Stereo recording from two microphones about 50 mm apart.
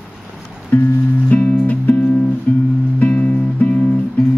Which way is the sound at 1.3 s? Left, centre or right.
Left.